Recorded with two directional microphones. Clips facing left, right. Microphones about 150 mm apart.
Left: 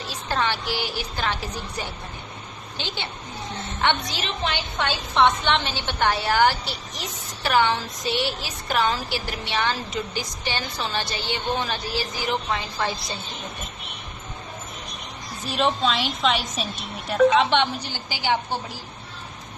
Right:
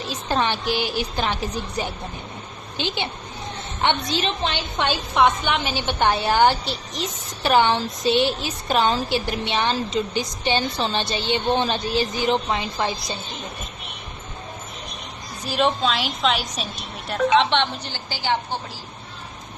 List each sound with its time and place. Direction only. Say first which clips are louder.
0.1 s a woman's voice: right 3 dB; 20° right (ahead or behind)
4.8 s a woman's voice: right 1 dB; 15° right (ahead or behind)
15.4 s a woman's voice: right 2 dB; centre (ahead or behind)